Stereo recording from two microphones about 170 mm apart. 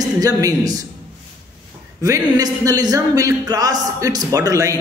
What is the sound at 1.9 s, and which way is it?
Speech, 20° right (ahead or behind).